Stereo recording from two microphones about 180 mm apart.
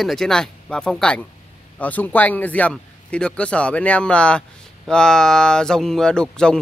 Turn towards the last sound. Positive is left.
turn(degrees=5)  # may be behind; listen again after turning